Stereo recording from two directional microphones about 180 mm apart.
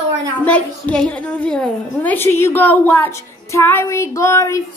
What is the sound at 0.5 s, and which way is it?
Speech, 5° left (ahead or behind).